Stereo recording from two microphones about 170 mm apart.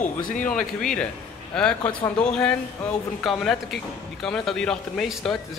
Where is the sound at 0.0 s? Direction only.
50° left (ahead or behind).